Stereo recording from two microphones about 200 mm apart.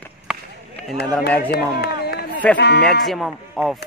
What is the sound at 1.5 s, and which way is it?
Run, 50° left (ahead or behind).